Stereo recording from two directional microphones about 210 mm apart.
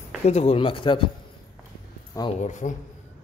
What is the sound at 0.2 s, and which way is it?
Speech, 30° left (ahead or behind).